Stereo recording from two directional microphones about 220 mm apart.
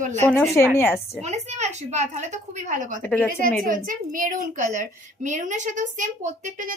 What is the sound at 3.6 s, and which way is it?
A woman's voice, 35° right (ahead or behind).